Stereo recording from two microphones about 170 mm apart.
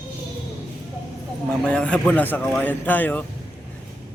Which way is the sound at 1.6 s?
5° left (ahead or behind).